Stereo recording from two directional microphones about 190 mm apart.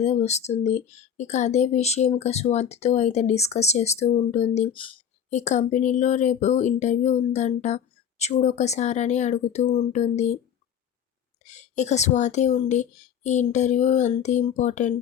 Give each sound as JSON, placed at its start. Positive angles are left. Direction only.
{"t": 0.0, "sound": "speech", "side_deg": 35}
{"t": 11.4, "sound": "speech", "side_deg": 40}